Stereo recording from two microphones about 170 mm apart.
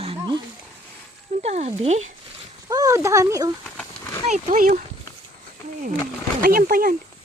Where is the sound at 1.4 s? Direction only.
40° right (ahead or behind).